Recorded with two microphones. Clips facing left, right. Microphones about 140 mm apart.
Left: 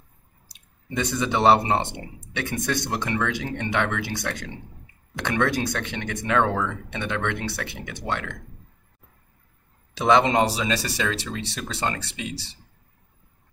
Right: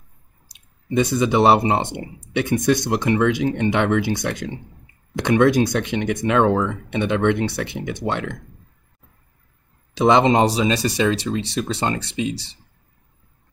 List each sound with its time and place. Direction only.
0.9 s speech: 15° right (ahead or behind)
9.9 s speech: 20° right (ahead or behind)